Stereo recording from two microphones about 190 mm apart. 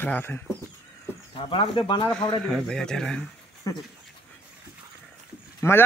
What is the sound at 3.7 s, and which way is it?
Speech, 20° left (ahead or behind).